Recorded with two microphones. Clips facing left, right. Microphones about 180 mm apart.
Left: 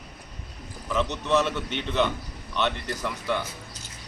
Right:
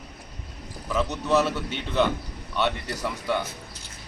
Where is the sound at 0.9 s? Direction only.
5° right (ahead or behind).